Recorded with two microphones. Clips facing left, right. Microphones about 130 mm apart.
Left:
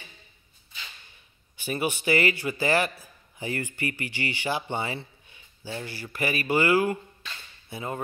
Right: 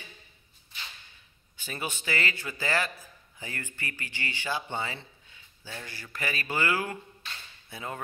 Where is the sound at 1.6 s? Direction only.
10° left (ahead or behind).